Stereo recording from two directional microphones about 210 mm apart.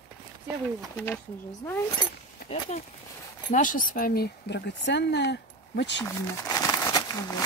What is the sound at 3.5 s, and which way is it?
Speech, 40° left (ahead or behind).